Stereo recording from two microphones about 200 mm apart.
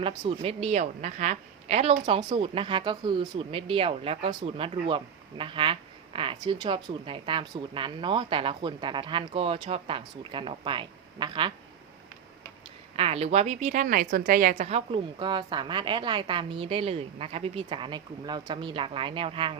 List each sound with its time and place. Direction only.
0.2 s a woman's voice: 30° right (ahead or behind)
13.0 s a woman's voice: 30° right (ahead or behind)
14.5 s a woman's voice: 30° right (ahead or behind)